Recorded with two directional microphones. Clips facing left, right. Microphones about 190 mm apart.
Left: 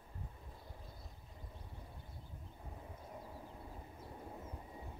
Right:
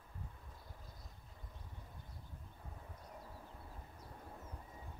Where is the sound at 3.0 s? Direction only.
15° left (ahead or behind).